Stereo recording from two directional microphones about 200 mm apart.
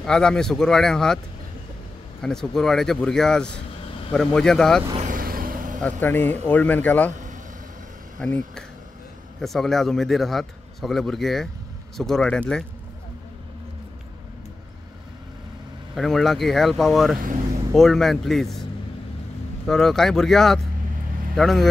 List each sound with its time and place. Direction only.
0.0 s a man's voice: 5° left (ahead or behind)
2.2 s a man's voice: centre (ahead or behind)
4.9 s vehicle: 40° right (ahead or behind)
5.8 s speech: 10° left (ahead or behind)
8.2 s a man's voice: 5° left (ahead or behind)
9.4 s a man's voice: centre (ahead or behind)
15.9 s a man's voice: centre (ahead or behind)